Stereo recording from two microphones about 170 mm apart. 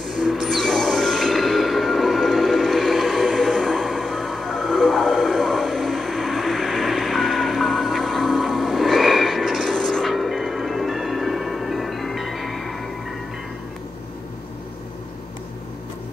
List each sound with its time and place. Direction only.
0.2 s music: centre (ahead or behind)